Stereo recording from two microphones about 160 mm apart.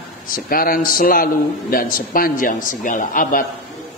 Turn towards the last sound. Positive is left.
turn(degrees=60)  # may be behind; listen again after turning